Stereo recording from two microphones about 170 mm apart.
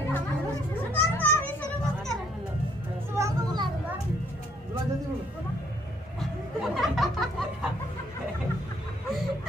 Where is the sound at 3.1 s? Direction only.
20° right (ahead or behind).